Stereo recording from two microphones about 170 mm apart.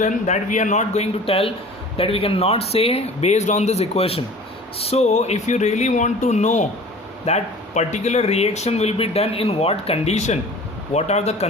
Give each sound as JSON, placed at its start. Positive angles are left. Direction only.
{"t": 0.0, "sound": "speech", "side_deg": 45}